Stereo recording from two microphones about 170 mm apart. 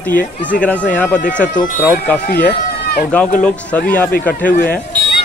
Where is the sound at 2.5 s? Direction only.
65° left (ahead or behind).